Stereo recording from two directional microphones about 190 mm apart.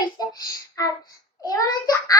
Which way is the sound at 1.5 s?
20° left (ahead or behind).